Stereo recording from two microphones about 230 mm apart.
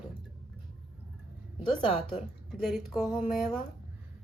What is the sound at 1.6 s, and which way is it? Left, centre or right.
Speech, left.